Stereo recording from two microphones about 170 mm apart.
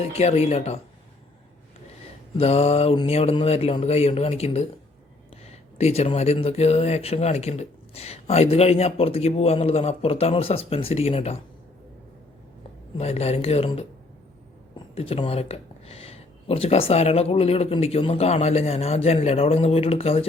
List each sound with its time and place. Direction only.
0.0 s speech: 40° left (ahead or behind)
2.4 s speech: 35° left (ahead or behind)
13.0 s speech: 40° left (ahead or behind)
14.9 s speech: 35° left (ahead or behind)